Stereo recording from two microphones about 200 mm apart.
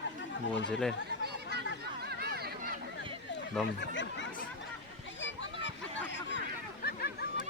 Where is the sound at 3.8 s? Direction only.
65° left (ahead or behind).